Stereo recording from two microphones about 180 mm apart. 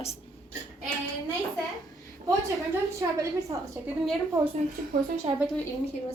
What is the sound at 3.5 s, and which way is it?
Speech, 20° right (ahead or behind).